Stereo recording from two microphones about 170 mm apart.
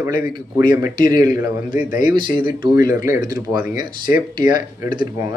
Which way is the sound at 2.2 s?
55° left (ahead or behind).